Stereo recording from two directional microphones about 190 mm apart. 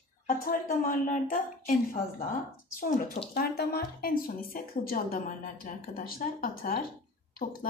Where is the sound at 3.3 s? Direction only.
55° left (ahead or behind).